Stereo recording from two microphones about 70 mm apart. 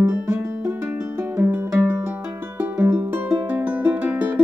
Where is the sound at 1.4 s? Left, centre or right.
Right.